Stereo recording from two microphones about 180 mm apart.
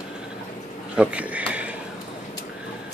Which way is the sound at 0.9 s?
5° right (ahead or behind).